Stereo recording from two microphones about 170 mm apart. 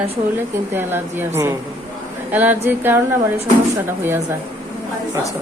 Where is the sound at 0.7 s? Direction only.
15° right (ahead or behind).